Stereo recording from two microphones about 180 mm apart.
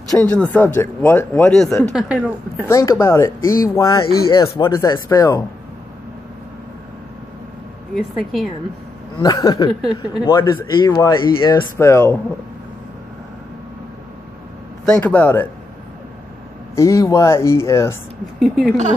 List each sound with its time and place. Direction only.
0.1 s speech: 5° left (ahead or behind)
2.7 s speech: 15° left (ahead or behind)
7.9 s speech: centre (ahead or behind)
9.2 s speech: 20° left (ahead or behind)
14.9 s speech: 10° left (ahead or behind)
16.7 s speech: 15° left (ahead or behind)
18.4 s speech: centre (ahead or behind)